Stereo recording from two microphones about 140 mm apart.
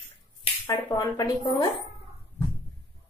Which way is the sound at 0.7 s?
30° left (ahead or behind).